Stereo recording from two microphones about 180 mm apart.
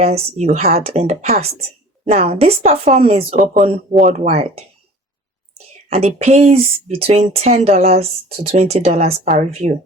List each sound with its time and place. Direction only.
0.0 s speech: 35° right (ahead or behind)
5.9 s speech: 35° right (ahead or behind)